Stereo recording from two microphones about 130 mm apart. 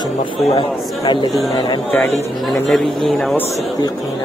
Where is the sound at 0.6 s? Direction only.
35° left (ahead or behind).